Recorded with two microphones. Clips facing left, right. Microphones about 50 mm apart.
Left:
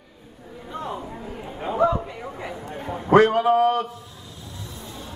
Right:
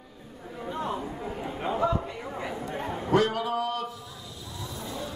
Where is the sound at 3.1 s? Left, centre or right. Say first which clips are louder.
Left 9 dB; left.